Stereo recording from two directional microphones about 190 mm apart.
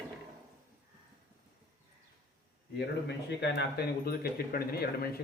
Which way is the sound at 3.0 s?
65° left (ahead or behind).